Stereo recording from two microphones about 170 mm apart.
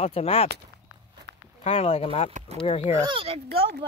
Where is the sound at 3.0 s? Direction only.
35° right (ahead or behind).